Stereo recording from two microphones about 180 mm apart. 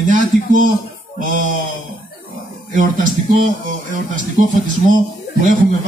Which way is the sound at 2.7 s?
45° right (ahead or behind).